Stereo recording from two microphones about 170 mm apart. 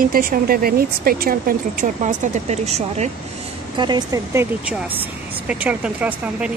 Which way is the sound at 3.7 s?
25° right (ahead or behind).